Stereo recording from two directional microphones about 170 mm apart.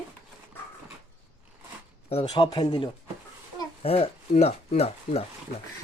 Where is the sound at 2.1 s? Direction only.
30° left (ahead or behind).